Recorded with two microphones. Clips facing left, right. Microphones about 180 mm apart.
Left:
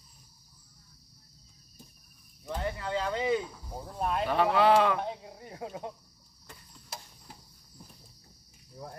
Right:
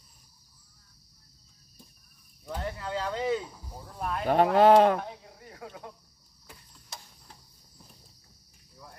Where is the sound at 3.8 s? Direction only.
25° left (ahead or behind).